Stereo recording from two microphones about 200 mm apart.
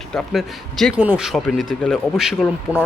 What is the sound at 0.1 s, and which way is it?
A man's voice, 5° left (ahead or behind).